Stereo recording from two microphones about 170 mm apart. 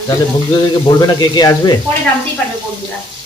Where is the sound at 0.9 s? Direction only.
20° left (ahead or behind).